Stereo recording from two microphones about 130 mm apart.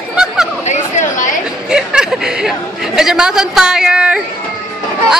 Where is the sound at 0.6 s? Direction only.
75° left (ahead or behind).